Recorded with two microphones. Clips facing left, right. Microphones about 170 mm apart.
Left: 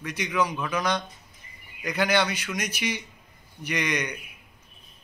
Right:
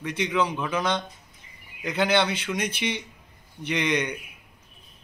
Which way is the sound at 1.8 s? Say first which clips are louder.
Right 1 dB; 10° left (ahead or behind).